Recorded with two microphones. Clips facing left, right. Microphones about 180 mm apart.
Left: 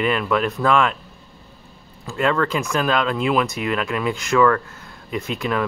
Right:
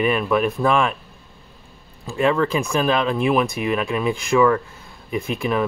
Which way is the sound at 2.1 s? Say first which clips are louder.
Right 2 dB; 15° right (ahead or behind).